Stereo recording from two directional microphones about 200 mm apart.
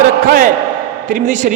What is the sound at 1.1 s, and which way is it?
Speech, 40° right (ahead or behind).